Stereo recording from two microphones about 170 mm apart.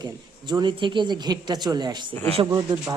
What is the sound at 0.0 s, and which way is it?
Speech, 25° right (ahead or behind).